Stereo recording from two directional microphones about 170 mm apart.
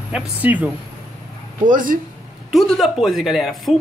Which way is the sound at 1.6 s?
50° right (ahead or behind).